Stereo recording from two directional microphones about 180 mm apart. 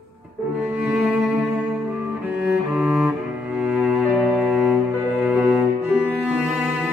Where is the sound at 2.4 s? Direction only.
5° right (ahead or behind).